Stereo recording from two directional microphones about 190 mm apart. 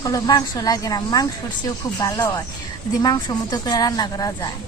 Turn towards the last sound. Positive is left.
turn(degrees=20)  # may be behind; listen again after turning